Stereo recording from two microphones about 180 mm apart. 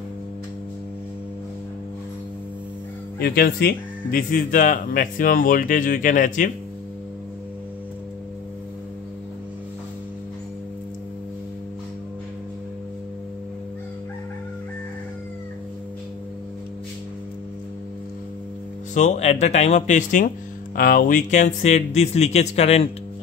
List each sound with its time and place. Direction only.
3.2 s speech: 60° left (ahead or behind)
18.9 s speech: 40° left (ahead or behind)